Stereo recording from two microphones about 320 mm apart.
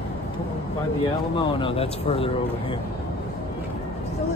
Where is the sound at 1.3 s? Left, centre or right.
Centre.